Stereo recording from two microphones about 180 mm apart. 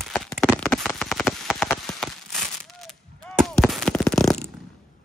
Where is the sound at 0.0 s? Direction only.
Centre (ahead or behind).